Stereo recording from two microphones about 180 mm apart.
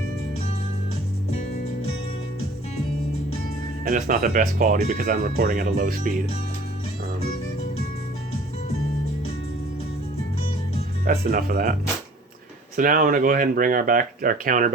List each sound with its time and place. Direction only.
3.8 s speech: 50° right (ahead or behind)
11.0 s speech: 55° right (ahead or behind)
12.7 s speech: 50° right (ahead or behind)